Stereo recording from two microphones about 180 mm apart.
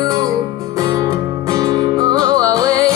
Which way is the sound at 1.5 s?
20° right (ahead or behind).